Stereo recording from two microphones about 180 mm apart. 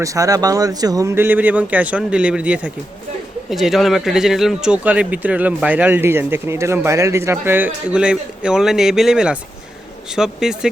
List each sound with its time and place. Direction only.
0.0 s speech: 20° right (ahead or behind); by 10.7 s 5° right (ahead or behind)